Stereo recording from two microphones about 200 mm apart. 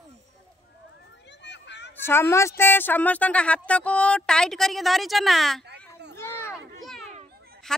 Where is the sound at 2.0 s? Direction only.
10° left (ahead or behind).